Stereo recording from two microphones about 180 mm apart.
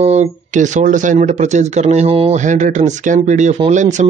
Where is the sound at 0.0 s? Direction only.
40° right (ahead or behind).